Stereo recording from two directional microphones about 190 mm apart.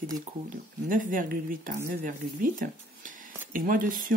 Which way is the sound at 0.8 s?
45° right (ahead or behind).